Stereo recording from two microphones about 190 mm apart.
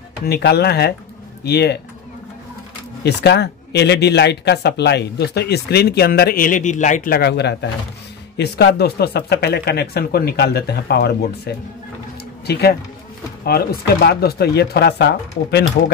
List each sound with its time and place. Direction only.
0.2 s speech: 60° left (ahead or behind)
3.0 s speech: 60° left (ahead or behind); by 7.2 s 40° left (ahead or behind)
7.2 s speech: 60° left (ahead or behind)